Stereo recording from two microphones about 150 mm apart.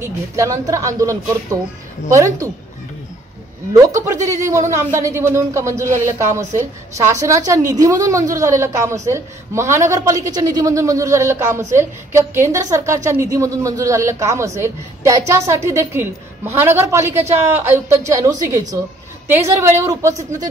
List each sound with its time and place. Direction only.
0.0 s a woman's voice: 20° right (ahead or behind)
3.7 s a woman's voice: 20° right (ahead or behind)